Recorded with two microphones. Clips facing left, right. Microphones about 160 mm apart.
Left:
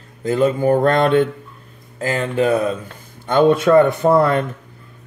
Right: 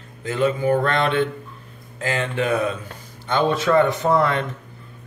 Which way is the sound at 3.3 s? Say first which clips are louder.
Left 6 dB; 50° left (ahead or behind).